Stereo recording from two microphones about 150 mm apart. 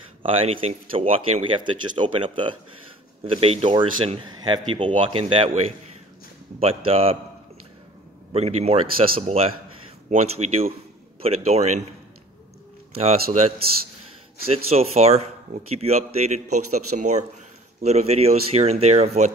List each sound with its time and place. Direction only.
0.2 s speech: 40° right (ahead or behind)
6.6 s speech: 40° right (ahead or behind)
8.3 s speech: 45° right (ahead or behind)
12.9 s speech: 40° right (ahead or behind)
14.5 s speech: 45° right (ahead or behind)